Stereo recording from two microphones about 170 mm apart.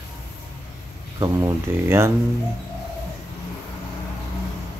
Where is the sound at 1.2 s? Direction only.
15° right (ahead or behind).